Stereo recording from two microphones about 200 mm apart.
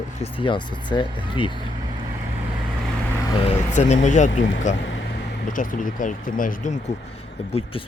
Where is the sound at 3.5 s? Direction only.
35° left (ahead or behind).